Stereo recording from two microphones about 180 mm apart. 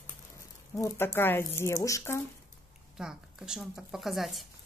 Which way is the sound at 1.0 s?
10° left (ahead or behind).